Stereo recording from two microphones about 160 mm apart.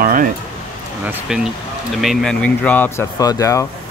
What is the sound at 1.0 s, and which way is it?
Speech, 5° right (ahead or behind).